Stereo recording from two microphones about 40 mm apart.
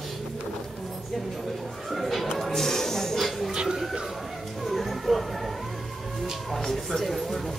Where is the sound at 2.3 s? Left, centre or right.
Centre.